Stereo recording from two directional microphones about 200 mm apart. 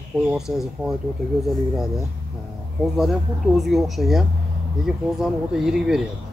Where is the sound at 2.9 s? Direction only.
Centre (ahead or behind).